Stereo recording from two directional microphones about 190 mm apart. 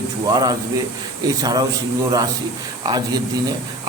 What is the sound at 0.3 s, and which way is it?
A man's voice, 20° right (ahead or behind).